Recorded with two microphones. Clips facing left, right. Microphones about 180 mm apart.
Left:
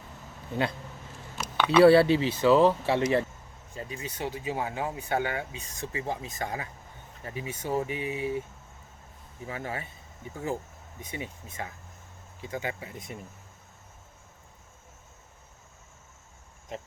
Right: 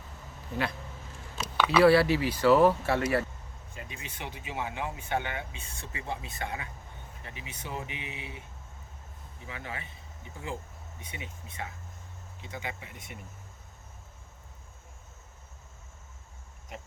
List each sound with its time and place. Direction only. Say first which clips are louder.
1.5 s a sound: left 3 dB; 5° right (ahead or behind)
1.8 s speech: left 4 dB; 30° left (ahead or behind)
3.8 s speech: left 7 dB; 35° left (ahead or behind)
9.5 s speech: left 5 dB; 40° left (ahead or behind)
11.0 s speech: left 7 dB; 45° left (ahead or behind)